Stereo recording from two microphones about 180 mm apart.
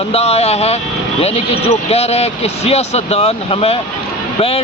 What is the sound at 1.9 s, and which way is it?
Speech, 35° left (ahead or behind).